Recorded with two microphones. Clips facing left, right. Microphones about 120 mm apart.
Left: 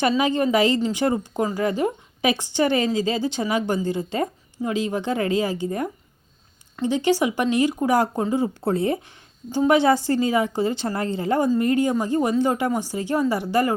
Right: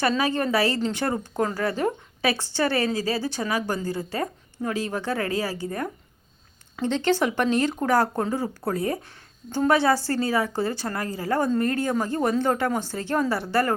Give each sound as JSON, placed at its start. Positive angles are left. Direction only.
{"t": 0.2, "sound": "a woman's voice", "side_deg": 15}